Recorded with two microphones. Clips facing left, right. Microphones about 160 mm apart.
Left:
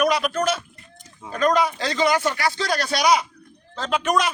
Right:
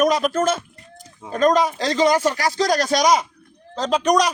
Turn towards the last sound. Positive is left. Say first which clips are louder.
# right 4 dB
turn(degrees=-35)  # may be behind; listen again after turning